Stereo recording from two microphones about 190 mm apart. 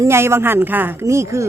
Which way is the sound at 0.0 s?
15° right (ahead or behind).